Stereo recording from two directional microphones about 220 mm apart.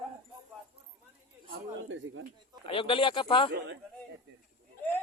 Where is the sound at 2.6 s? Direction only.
25° left (ahead or behind).